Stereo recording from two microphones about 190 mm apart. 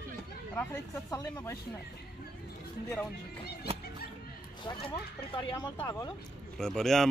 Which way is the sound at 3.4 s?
55° left (ahead or behind).